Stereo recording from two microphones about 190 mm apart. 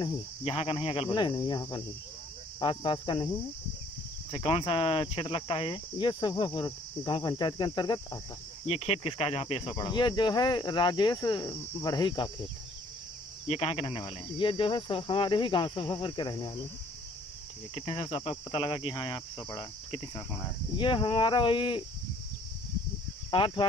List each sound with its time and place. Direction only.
0.0 s speech: 30° left (ahead or behind)
13.5 s speech: 30° left (ahead or behind)
17.7 s speech: 30° left (ahead or behind)
23.3 s speech: 25° left (ahead or behind)